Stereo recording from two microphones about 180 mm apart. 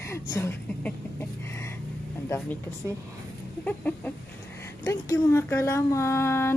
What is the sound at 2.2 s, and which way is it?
Speech, 15° left (ahead or behind).